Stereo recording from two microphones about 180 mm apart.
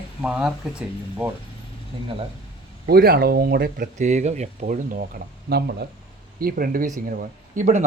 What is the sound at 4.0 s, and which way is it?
Speech, 40° right (ahead or behind).